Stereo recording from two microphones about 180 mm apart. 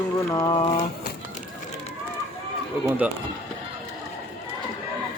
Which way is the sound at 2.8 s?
5° right (ahead or behind).